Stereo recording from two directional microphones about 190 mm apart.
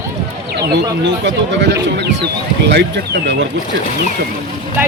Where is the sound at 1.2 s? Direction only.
70° right (ahead or behind).